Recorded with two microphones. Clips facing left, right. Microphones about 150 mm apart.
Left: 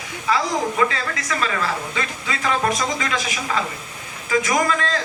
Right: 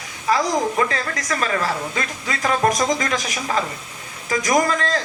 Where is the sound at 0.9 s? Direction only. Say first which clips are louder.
Right 1 dB; 45° right (ahead or behind).